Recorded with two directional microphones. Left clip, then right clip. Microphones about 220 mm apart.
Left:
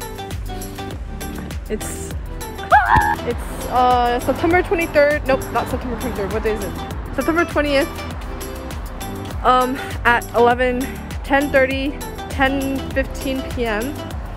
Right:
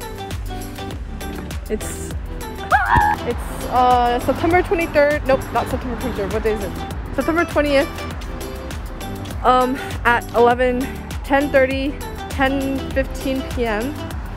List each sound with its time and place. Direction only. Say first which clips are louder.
2.8 s speech: left 1 dB; centre (ahead or behind)
9.4 s speech: even; centre (ahead or behind)